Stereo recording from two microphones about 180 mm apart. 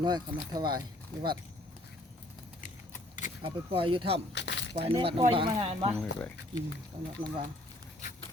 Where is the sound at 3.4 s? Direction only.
30° right (ahead or behind).